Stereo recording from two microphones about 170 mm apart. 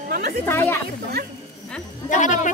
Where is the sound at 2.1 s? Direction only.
45° left (ahead or behind).